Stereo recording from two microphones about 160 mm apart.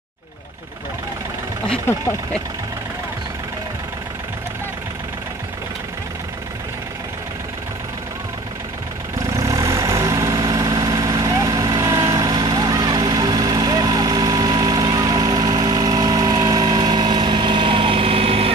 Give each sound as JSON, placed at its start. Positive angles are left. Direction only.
{"t": 9.2, "sound": "vehicle", "side_deg": -20}